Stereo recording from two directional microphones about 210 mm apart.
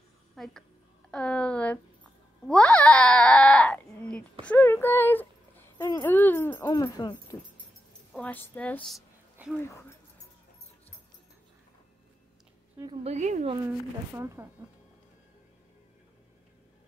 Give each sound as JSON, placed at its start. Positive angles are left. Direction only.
{"t": 0.4, "sound": "a woman's voice", "side_deg": 0}
{"t": 1.1, "sound": "a sound", "side_deg": 5}
{"t": 6.7, "sound": "music", "side_deg": 20}
{"t": 8.1, "sound": "a sound", "side_deg": 5}
{"t": 13.0, "sound": "speech", "side_deg": -35}
{"t": 13.7, "sound": "speech", "side_deg": -10}